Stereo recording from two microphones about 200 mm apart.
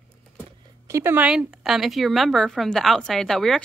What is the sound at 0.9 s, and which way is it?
A woman's voice, 10° right (ahead or behind).